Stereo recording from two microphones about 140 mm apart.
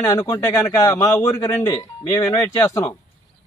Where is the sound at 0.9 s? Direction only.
25° left (ahead or behind).